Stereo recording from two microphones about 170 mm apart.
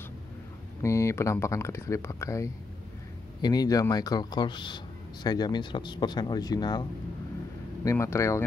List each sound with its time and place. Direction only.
0.8 s a man's voice: 15° left (ahead or behind)